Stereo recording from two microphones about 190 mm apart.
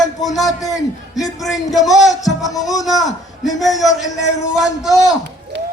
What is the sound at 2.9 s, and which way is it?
Speech, 20° left (ahead or behind).